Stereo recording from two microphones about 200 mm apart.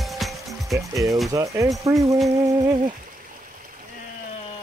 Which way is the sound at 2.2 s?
20° right (ahead or behind).